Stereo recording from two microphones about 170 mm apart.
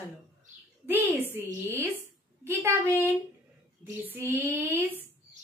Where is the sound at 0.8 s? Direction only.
10° right (ahead or behind).